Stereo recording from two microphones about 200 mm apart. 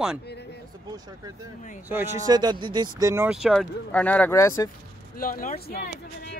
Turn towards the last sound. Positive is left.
turn(degrees=45)  # may be behind; listen again after turning